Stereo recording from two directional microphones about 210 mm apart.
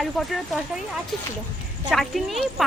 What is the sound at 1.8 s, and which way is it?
Speech, centre (ahead or behind).